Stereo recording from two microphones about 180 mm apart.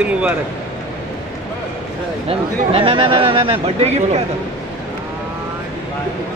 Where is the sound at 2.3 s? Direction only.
30° right (ahead or behind).